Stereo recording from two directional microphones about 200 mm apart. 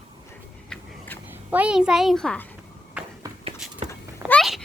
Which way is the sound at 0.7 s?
10° left (ahead or behind).